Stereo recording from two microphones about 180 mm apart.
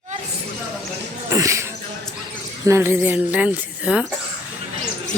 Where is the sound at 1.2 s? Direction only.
15° right (ahead or behind).